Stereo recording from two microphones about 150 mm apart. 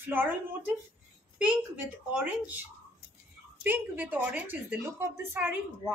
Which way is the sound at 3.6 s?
10° right (ahead or behind).